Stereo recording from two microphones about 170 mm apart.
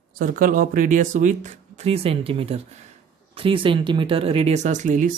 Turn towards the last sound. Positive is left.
turn(degrees=-50)  # may be behind; listen again after turning